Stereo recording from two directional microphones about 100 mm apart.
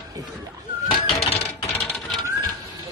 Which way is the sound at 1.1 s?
85° left.